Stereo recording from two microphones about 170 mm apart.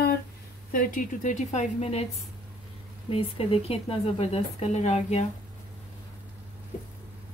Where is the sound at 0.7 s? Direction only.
55° left (ahead or behind).